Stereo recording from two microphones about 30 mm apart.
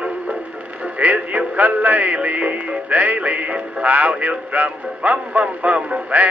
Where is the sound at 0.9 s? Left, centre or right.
Right.